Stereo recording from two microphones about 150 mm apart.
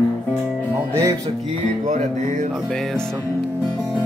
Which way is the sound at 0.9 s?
20° right (ahead or behind).